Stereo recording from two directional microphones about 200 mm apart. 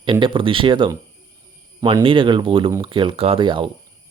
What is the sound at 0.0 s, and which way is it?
Speech, 25° right (ahead or behind).